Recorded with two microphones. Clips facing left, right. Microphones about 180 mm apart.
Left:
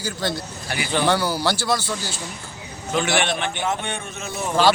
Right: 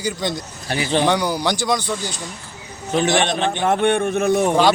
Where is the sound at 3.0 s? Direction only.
20° right (ahead or behind).